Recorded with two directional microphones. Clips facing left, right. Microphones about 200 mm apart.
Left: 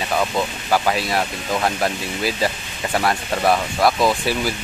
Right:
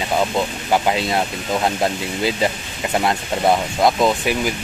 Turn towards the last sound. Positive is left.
turn(degrees=-15)  # may be behind; listen again after turning